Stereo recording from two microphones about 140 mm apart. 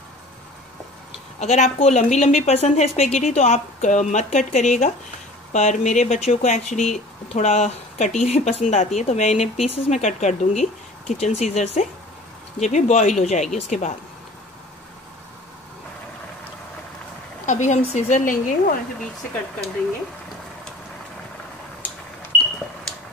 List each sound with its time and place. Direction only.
1.4 s speech: 55° left (ahead or behind)
17.5 s speech: 60° left (ahead or behind)